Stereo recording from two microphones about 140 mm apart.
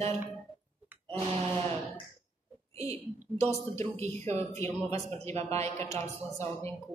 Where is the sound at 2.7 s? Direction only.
20° left (ahead or behind).